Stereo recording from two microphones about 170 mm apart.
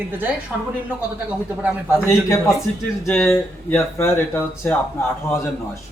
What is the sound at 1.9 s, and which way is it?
Speech, 15° left (ahead or behind).